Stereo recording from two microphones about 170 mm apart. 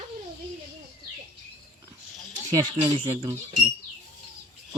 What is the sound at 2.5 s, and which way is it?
Speech, 25° right (ahead or behind).